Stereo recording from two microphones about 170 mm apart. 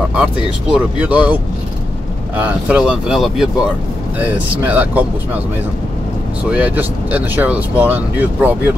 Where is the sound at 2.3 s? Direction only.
10° right (ahead or behind).